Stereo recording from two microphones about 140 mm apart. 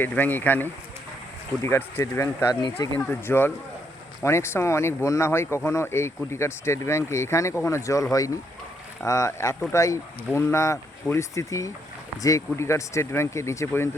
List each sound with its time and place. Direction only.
0.0 s speech: 15° left (ahead or behind)
2.6 s speech: 35° left (ahead or behind)
3.0 s speech: 15° left (ahead or behind)